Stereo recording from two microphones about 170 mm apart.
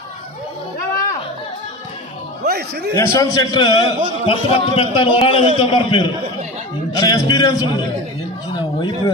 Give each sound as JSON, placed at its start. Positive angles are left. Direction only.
{"t": 2.4, "sound": "a man's voice", "side_deg": -75}
{"t": 2.9, "sound": "a man's voice", "side_deg": 20}